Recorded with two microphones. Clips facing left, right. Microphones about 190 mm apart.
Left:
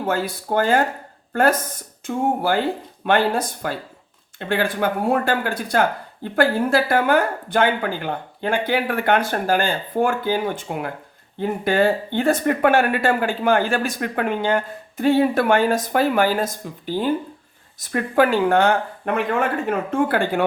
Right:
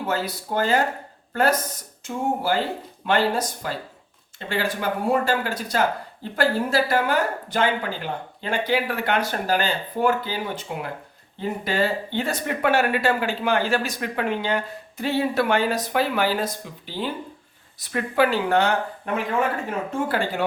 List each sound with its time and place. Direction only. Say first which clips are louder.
0.0 s speech: left 3 dB; 50° left (ahead or behind)